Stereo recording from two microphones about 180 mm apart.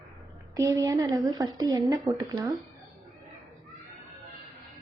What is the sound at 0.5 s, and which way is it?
Speech, 20° right (ahead or behind).